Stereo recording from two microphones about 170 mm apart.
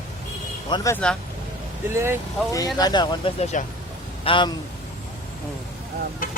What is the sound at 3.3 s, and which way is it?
Speech, 40° left (ahead or behind).